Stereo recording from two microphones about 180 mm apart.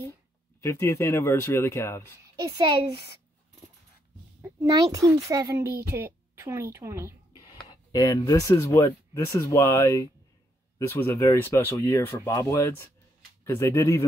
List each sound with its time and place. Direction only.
0.6 s speech: 15° left (ahead or behind)
2.4 s a child's voice: 25° right (ahead or behind)
4.9 s a child's voice: 15° right (ahead or behind)
7.9 s speech: 20° left (ahead or behind)